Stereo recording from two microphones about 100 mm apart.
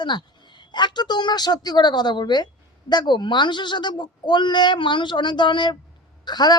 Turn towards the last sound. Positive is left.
turn(degrees=45)  # may be behind; listen again after turning